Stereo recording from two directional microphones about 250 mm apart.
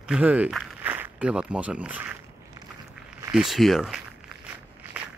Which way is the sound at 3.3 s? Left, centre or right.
Centre.